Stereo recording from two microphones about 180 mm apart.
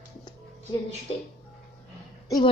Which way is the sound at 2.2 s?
20° left (ahead or behind).